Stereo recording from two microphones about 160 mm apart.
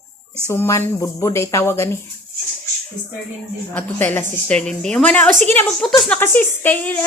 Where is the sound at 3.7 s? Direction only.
10° left (ahead or behind).